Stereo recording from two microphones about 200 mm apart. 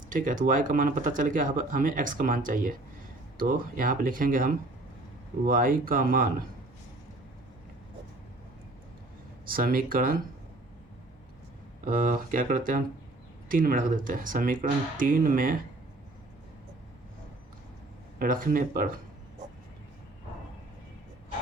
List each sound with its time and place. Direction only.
0.1 s speech: 40° right (ahead or behind)
9.5 s speech: 45° right (ahead or behind)
11.9 s speech: 45° right (ahead or behind)
18.2 s speech: 45° right (ahead or behind)